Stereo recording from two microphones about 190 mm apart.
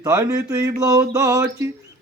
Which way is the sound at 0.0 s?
20° right (ahead or behind).